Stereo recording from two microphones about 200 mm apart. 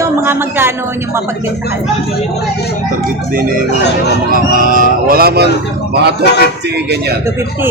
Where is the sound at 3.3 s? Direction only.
45° right (ahead or behind).